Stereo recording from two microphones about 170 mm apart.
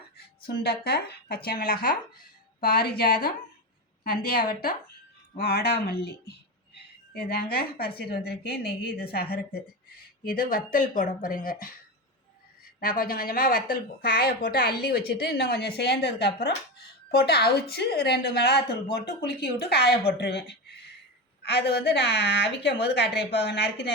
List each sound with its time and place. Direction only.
0.4 s a woman's voice: 70° left (ahead or behind)
10.5 s speech: 50° left (ahead or behind)
12.8 s a woman's voice: 60° left (ahead or behind); by 23.7 s 80° left